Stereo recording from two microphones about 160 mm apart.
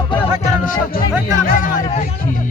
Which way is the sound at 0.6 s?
65° left (ahead or behind).